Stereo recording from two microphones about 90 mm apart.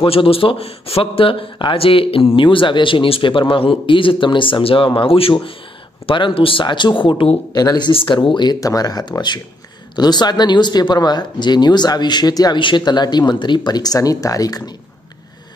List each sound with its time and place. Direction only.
0.0 s speech: 85° left; by 7.2 s 65° left (ahead or behind)
7.5 s speech: 50° left (ahead or behind)
7.9 s speech: 70° left (ahead or behind)
8.5 s speech: 40° left (ahead or behind)